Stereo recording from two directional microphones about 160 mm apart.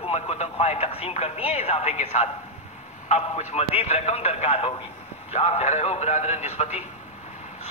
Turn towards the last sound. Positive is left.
turn(degrees=45)  # may be behind; listen again after turning